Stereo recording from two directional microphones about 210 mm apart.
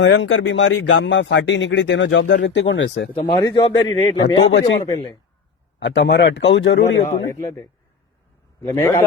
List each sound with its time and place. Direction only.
0.0 s speech: 60° left (ahead or behind)
3.2 s a man's voice: 20° left (ahead or behind)
5.8 s speech: 55° left (ahead or behind)
8.6 s a man's voice: 15° left (ahead or behind)